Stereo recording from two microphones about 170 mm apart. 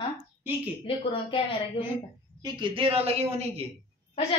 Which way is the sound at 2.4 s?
25° right (ahead or behind).